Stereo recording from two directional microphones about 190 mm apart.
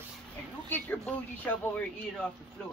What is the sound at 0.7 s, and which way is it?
Speech, 10° left (ahead or behind).